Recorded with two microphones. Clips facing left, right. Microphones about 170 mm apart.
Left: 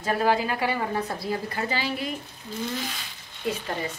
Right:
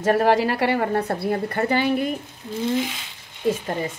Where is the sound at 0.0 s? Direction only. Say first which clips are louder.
Right 6 dB; 65° right (ahead or behind).